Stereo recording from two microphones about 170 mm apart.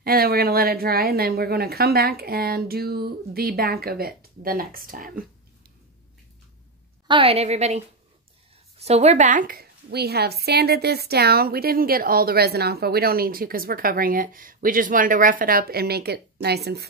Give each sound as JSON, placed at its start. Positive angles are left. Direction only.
{"t": 0.0, "sound": "a woman's voice", "side_deg": -65}
{"t": 7.1, "sound": "a woman's voice", "side_deg": -30}